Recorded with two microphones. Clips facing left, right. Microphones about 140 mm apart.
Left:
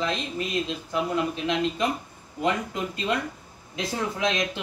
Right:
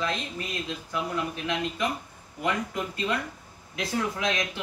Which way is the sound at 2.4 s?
25° left (ahead or behind).